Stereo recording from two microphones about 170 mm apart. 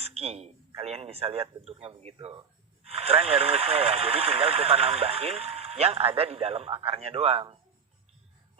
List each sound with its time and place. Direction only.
0.0 s a man's voice: 35° right (ahead or behind)